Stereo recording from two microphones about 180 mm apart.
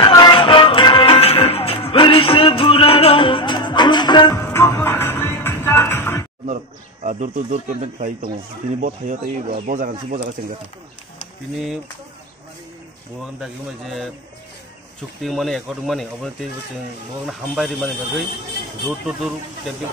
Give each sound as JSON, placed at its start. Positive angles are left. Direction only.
{"t": 0.0, "sound": "music", "side_deg": 25}
{"t": 6.4, "sound": "speech", "side_deg": -40}
{"t": 13.2, "sound": "speech", "side_deg": 0}
{"t": 15.2, "sound": "speech", "side_deg": 0}